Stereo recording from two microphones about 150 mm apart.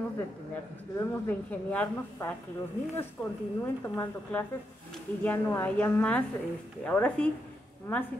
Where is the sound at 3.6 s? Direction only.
15° left (ahead or behind).